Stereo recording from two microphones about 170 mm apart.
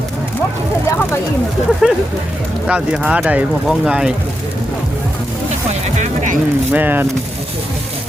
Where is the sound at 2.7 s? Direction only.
5° right (ahead or behind).